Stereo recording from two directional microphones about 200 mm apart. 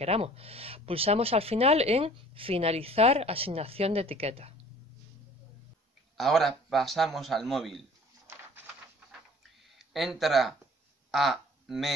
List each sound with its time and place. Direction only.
0.0 s speech: 30° right (ahead or behind)
6.1 s a man's voice: centre (ahead or behind)
9.8 s speech: centre (ahead or behind)